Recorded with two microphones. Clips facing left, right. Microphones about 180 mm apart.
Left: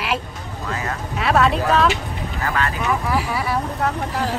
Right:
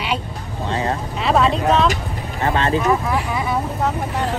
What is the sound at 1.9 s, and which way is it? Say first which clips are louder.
Speech: even; 30° right (ahead or behind).